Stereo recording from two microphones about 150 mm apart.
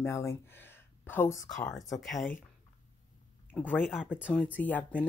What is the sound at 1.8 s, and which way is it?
Speech, centre (ahead or behind).